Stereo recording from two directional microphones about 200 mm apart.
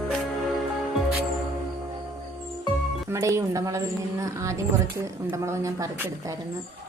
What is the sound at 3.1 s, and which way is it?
Speech, 15° right (ahead or behind).